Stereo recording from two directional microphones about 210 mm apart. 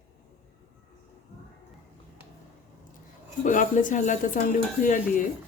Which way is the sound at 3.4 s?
35° left (ahead or behind).